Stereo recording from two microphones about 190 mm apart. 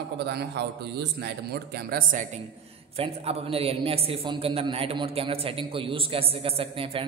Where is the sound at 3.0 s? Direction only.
30° right (ahead or behind).